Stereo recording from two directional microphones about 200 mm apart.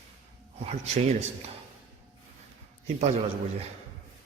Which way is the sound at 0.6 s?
35° right (ahead or behind).